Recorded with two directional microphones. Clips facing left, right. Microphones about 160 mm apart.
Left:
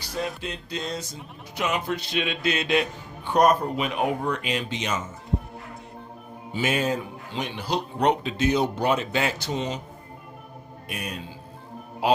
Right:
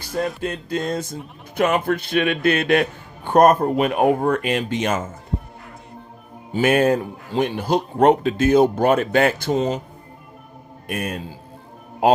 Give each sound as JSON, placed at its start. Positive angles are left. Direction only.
{"t": 0.0, "sound": "music", "side_deg": -50}
{"t": 0.4, "sound": "speech", "side_deg": -50}
{"t": 6.5, "sound": "speech", "side_deg": -55}
{"t": 10.8, "sound": "speech", "side_deg": -50}